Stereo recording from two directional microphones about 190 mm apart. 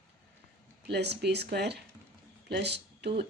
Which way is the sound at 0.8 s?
60° right (ahead or behind).